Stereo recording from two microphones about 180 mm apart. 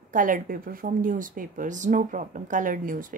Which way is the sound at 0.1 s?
50° right (ahead or behind).